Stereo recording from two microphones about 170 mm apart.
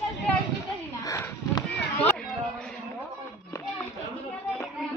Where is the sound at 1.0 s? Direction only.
20° left (ahead or behind).